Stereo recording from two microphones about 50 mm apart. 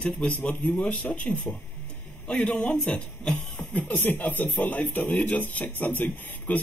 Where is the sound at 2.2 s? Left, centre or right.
Centre.